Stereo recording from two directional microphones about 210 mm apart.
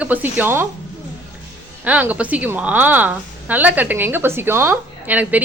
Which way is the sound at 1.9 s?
5° right (ahead or behind).